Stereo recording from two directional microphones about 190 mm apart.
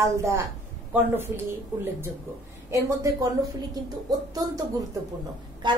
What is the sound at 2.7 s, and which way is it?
A woman's voice, 20° right (ahead or behind).